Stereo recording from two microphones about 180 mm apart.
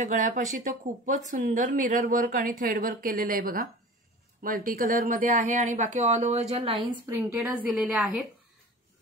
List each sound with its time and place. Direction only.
0.0 s speech: 45° right (ahead or behind)
6.5 s a woman's voice: 30° right (ahead or behind)
7.1 s a woman's voice: 10° right (ahead or behind)